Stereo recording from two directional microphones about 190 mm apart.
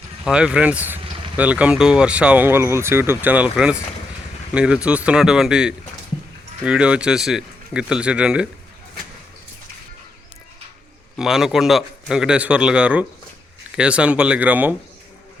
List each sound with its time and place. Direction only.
0.3 s a man's voice: 5° right (ahead or behind)
1.0 s vehicle: 25° right (ahead or behind)
1.4 s a man's voice: 5° right (ahead or behind)
11.2 s a man's voice: centre (ahead or behind)